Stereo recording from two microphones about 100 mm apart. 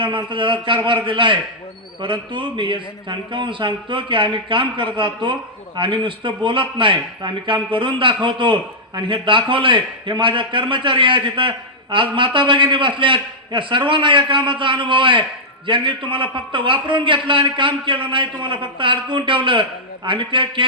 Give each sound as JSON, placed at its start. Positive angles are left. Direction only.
{"t": 0.0, "sound": "a man's voice", "side_deg": -55}